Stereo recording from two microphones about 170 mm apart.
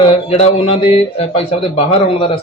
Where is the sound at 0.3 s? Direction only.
35° left (ahead or behind).